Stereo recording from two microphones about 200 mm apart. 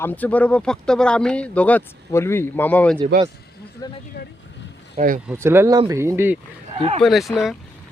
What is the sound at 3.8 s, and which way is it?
Speech, 20° left (ahead or behind).